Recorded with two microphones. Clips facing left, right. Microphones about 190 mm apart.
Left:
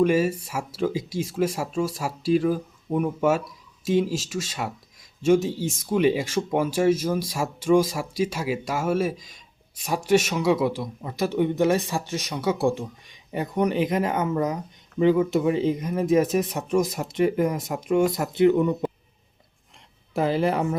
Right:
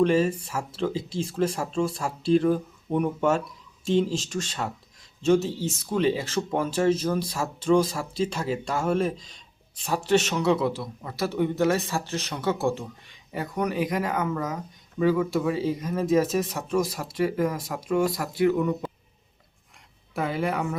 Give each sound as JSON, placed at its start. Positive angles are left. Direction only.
{"t": 0.0, "sound": "speech", "side_deg": 10}
{"t": 20.1, "sound": "speech", "side_deg": 30}